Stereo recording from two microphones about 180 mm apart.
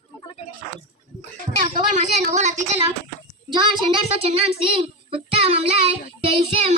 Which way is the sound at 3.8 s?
30° right (ahead or behind).